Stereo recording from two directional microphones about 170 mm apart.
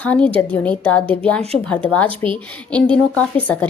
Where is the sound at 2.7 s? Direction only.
10° left (ahead or behind).